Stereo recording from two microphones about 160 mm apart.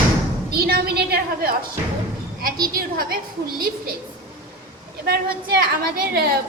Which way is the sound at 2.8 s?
65° right (ahead or behind).